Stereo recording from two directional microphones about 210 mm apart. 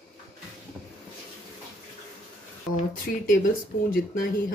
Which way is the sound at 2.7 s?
40° left (ahead or behind).